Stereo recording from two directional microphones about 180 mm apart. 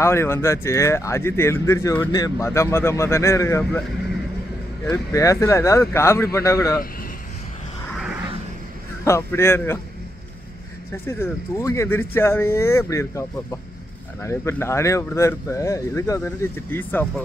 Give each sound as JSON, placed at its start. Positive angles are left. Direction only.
{"t": 0.0, "sound": "speech", "side_deg": 15}
{"t": 4.8, "sound": "speech", "side_deg": 20}
{"t": 9.0, "sound": "speech", "side_deg": 15}
{"t": 11.1, "sound": "speech", "side_deg": 15}